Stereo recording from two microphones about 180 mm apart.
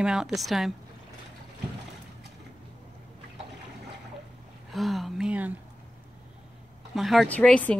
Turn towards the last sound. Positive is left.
turn(degrees=10)  # may be behind; listen again after turning